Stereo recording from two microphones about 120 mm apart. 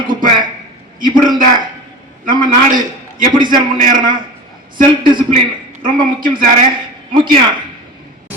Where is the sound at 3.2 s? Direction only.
40° right (ahead or behind).